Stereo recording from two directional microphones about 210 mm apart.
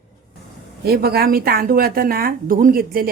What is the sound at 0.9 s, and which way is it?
Speech, 45° right (ahead or behind).